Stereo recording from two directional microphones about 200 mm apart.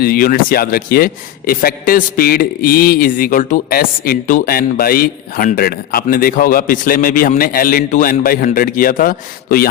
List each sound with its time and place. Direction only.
0.0 s a man's voice: 45° left (ahead or behind)